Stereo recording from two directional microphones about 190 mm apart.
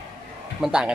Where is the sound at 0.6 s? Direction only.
5° right (ahead or behind).